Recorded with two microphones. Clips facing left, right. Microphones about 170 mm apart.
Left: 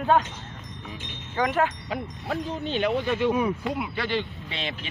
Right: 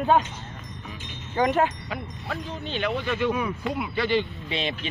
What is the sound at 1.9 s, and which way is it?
Speech, 45° left (ahead or behind).